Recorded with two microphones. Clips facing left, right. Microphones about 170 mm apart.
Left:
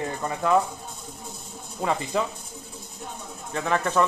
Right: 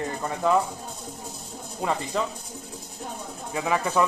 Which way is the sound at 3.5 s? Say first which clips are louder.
Even; 10° right (ahead or behind).